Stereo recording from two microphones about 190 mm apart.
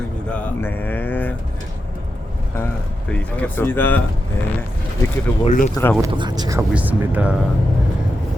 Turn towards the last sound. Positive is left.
turn(degrees=-5)  # may be behind; listen again after turning